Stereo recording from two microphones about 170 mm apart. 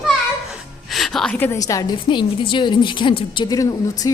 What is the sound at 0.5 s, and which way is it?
A woman's voice, centre (ahead or behind).